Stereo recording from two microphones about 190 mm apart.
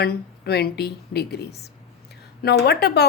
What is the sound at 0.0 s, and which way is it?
A woman's voice, 55° left (ahead or behind).